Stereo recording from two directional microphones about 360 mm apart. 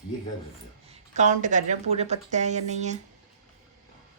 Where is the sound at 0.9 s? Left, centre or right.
Centre.